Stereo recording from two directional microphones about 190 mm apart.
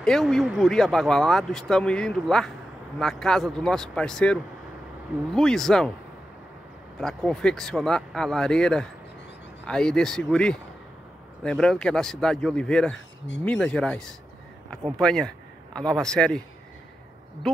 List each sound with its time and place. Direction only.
0.0 s speech: centre (ahead or behind)
7.0 s a man's voice: 5° left (ahead or behind)